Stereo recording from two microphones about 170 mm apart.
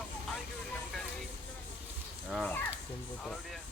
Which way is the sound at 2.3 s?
5° left (ahead or behind).